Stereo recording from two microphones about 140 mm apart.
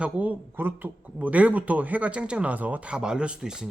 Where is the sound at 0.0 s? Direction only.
10° right (ahead or behind).